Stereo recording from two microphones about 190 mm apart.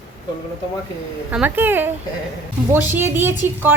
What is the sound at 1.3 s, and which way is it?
A woman's voice, 10° right (ahead or behind).